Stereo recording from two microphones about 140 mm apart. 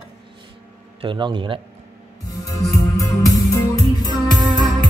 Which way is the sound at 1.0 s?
35° right (ahead or behind).